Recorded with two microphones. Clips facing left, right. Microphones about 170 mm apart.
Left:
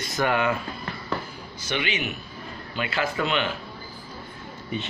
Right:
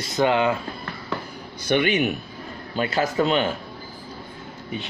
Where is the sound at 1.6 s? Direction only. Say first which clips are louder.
Right 8 dB; 55° right (ahead or behind).